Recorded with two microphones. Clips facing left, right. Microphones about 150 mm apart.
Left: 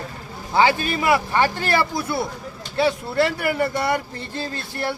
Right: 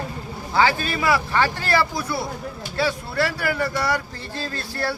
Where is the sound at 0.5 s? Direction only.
20° left (ahead or behind).